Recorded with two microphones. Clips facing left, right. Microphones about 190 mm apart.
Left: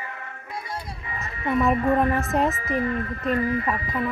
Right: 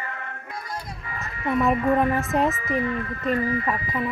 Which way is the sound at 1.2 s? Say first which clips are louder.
Even; centre (ahead or behind).